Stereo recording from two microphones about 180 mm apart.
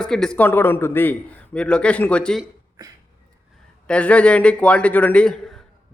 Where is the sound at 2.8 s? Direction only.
20° right (ahead or behind).